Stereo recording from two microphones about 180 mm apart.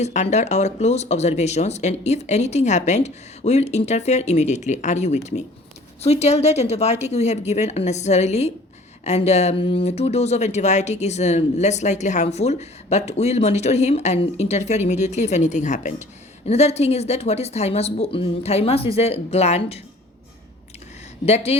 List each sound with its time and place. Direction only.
0.0 s speech: 40° left (ahead or behind)
21.2 s speech: 35° left (ahead or behind)